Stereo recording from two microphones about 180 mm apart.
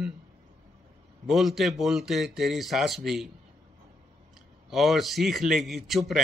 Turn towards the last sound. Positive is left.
turn(degrees=0)  # may be behind; listen again after turning